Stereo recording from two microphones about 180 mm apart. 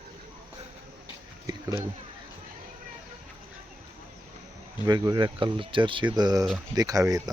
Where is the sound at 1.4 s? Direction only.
15° right (ahead or behind).